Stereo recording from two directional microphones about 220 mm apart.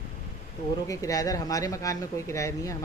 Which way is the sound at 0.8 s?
15° left (ahead or behind).